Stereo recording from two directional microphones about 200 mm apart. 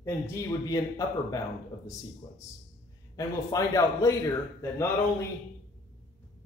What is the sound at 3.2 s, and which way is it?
A man's voice, 15° left (ahead or behind).